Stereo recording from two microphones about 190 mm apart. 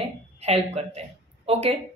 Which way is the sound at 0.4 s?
35° right (ahead or behind).